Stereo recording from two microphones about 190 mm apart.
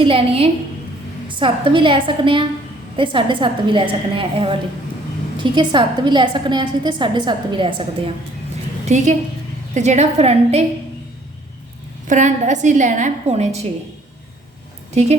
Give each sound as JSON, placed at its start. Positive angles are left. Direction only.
{"t": 0.0, "sound": "a woman's voice", "side_deg": -30}
{"t": 8.9, "sound": "a woman's voice", "side_deg": -40}
{"t": 12.0, "sound": "a woman's voice", "side_deg": -40}
{"t": 15.0, "sound": "a woman's voice", "side_deg": -35}